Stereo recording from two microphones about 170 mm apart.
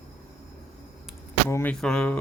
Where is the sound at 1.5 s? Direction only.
15° left (ahead or behind).